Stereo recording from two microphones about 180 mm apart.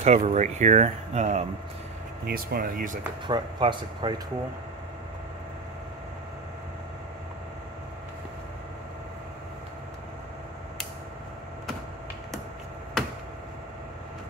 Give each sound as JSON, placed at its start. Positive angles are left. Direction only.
{"t": 0.0, "sound": "speech", "side_deg": -40}
{"t": 2.2, "sound": "speech", "side_deg": -55}
{"t": 3.3, "sound": "speech", "side_deg": -25}